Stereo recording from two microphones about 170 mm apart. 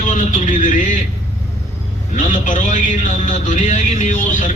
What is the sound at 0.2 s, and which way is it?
Speech, 45° left (ahead or behind).